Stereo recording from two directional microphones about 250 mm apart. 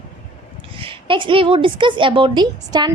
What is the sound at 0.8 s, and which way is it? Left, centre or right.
A woman's voice, right.